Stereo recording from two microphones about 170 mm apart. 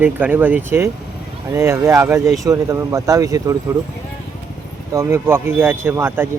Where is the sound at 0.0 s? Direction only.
10° right (ahead or behind).